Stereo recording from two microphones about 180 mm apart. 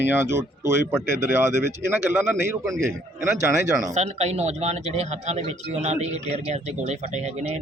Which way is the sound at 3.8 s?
40° right (ahead or behind).